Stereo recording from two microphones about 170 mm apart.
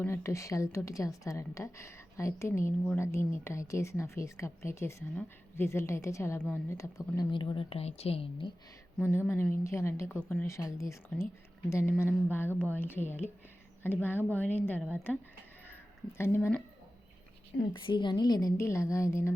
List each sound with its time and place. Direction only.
0.0 s a woman's voice: 15° left (ahead or behind)
7.2 s a woman's voice: 30° left (ahead or behind)
9.0 s a woman's voice: 15° left (ahead or behind)
16.1 s a woman's voice: 15° left (ahead or behind)
17.7 s a woman's voice: 25° left (ahead or behind)